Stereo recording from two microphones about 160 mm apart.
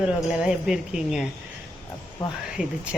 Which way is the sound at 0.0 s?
5° right (ahead or behind).